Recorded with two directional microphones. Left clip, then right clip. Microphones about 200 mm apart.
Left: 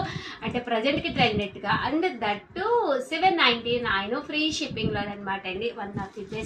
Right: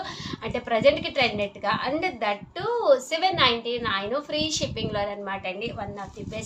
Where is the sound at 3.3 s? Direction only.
40° right (ahead or behind).